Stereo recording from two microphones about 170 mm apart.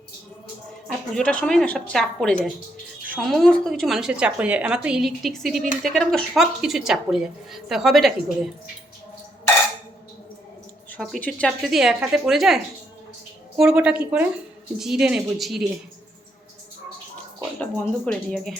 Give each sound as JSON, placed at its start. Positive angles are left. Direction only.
{"t": 0.9, "sound": "a woman's voice", "side_deg": 5}
{"t": 10.9, "sound": "a woman's voice", "side_deg": 5}
{"t": 13.6, "sound": "a woman's voice", "side_deg": -5}
{"t": 17.6, "sound": "a woman's voice", "side_deg": 5}